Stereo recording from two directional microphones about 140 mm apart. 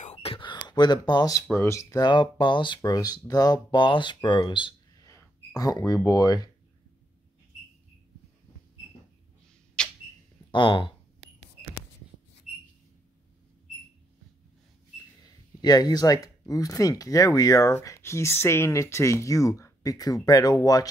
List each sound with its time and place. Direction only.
0.0 s whispering: 45° left (ahead or behind)
0.7 s speech: 30° left (ahead or behind)
5.0 s a sound: 25° left (ahead or behind)
6.0 s speech: 25° left (ahead or behind)
9.8 s a sound: 5° left (ahead or behind)
10.5 s speech: 35° left (ahead or behind)
15.6 s speech: 30° left (ahead or behind)